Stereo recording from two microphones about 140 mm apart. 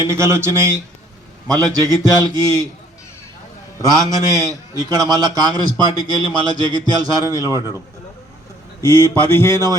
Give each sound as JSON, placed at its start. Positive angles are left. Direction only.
{"t": 0.0, "sound": "speech", "side_deg": -20}
{"t": 3.8, "sound": "speech", "side_deg": -25}
{"t": 8.9, "sound": "a sound", "side_deg": 20}